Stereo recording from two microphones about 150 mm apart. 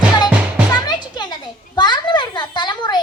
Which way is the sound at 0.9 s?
30° left (ahead or behind).